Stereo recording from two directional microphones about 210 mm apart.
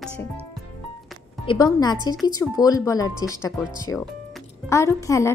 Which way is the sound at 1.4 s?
20° left (ahead or behind).